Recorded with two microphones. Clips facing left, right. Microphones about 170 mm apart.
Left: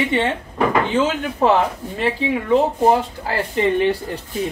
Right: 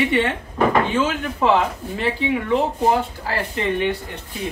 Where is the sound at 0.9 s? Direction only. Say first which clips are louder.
Left 2 dB; 35° left (ahead or behind).